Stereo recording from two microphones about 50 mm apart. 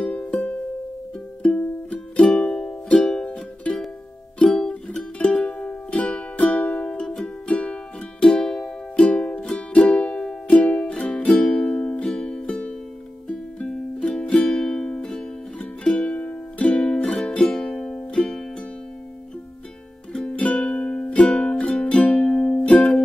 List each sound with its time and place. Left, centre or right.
0.1 s music: left
1.6 s music: left
4.6 s music: centre
9.1 s music: left
10.5 s music: left
16.6 s music: centre
20.2 s music: left